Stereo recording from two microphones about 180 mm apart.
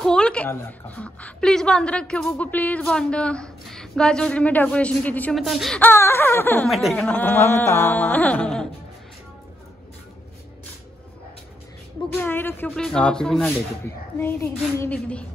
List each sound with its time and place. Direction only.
0.0 s a woman's voice: 5° left (ahead or behind)
6.7 s a woman's voice: centre (ahead or behind)
12.2 s a woman's voice: 10° left (ahead or behind)